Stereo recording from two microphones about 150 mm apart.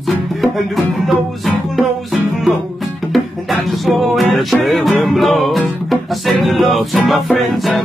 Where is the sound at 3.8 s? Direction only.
Centre (ahead or behind).